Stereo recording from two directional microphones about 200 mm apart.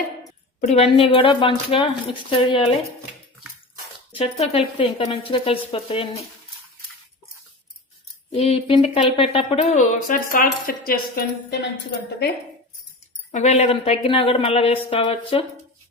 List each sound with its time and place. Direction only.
0.6 s speech: 35° left (ahead or behind)
4.1 s speech: 30° left (ahead or behind)
8.3 s speech: 30° left (ahead or behind); by 11.2 s 45° left (ahead or behind)
13.3 s speech: 35° left (ahead or behind)